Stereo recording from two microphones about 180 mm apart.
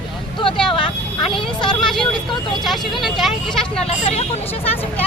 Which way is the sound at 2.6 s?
Centre (ahead or behind).